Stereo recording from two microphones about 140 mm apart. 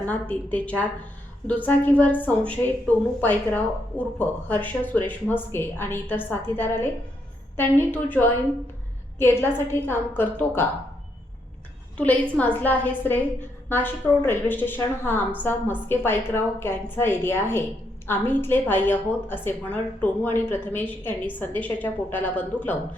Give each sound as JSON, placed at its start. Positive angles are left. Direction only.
{"t": 0.0, "sound": "a woman's voice", "side_deg": 10}
{"t": 12.4, "sound": "a woman's voice", "side_deg": 10}